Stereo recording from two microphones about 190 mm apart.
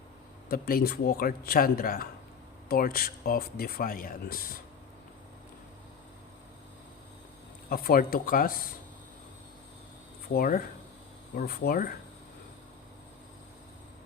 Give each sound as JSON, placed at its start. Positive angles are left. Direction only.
{"t": 0.4, "sound": "speech", "side_deg": 50}
{"t": 7.7, "sound": "speech", "side_deg": 50}
{"t": 10.3, "sound": "speech", "side_deg": 45}